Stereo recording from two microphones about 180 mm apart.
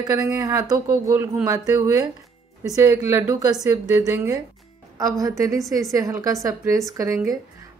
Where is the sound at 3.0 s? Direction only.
10° right (ahead or behind).